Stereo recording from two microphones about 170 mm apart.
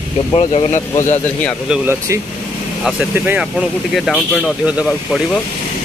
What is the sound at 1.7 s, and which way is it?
Speech, 15° right (ahead or behind).